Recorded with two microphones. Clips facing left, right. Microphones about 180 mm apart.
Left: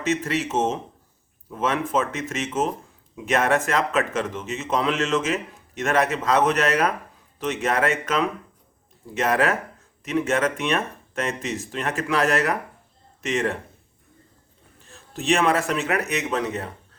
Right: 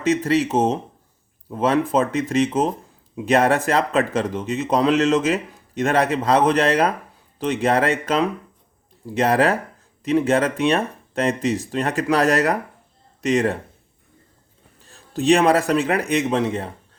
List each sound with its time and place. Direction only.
0.0 s speech: 35° right (ahead or behind)
14.8 s speech: 35° right (ahead or behind)